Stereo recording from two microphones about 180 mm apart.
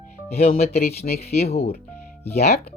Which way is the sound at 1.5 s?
35° left (ahead or behind).